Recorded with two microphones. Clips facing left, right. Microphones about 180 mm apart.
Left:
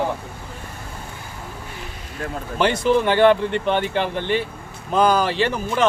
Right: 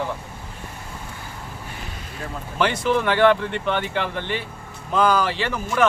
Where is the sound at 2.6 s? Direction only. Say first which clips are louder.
Left 3 dB; 25° left (ahead or behind).